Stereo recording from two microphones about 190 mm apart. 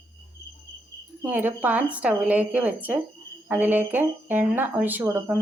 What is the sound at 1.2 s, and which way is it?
Speech, 10° right (ahead or behind).